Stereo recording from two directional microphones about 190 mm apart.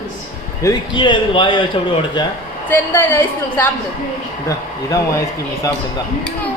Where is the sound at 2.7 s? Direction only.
10° left (ahead or behind).